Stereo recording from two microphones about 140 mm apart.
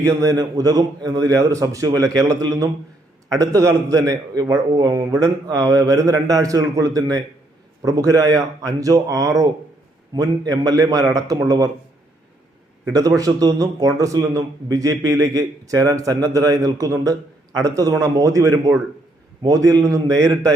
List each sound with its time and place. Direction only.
0.0 s a man's voice: 20° right (ahead or behind)
12.8 s a man's voice: 25° right (ahead or behind)